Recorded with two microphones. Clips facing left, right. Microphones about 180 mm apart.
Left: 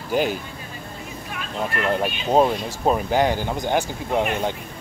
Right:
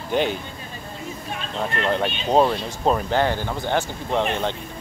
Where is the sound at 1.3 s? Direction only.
30° right (ahead or behind).